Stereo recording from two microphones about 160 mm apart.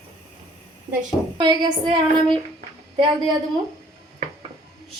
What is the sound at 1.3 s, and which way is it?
Speech, 25° right (ahead or behind).